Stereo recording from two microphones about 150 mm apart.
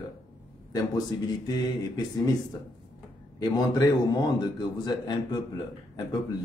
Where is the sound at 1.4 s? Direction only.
30° left (ahead or behind).